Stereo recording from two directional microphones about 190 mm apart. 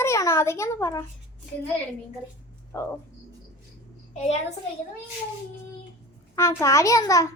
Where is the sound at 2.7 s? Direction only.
15° left (ahead or behind).